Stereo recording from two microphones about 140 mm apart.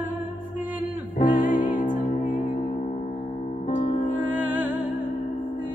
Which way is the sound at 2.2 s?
60° left (ahead or behind).